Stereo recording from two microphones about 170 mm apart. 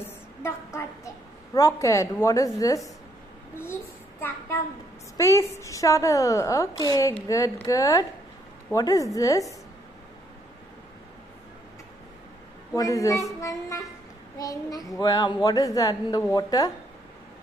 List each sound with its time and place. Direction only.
0.7 s a woman's voice: 20° left (ahead or behind)
5.1 s a woman's voice: 15° left (ahead or behind)
12.7 s a woman's voice: 20° left (ahead or behind)